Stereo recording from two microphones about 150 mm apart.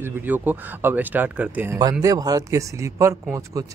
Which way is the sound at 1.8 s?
25° right (ahead or behind).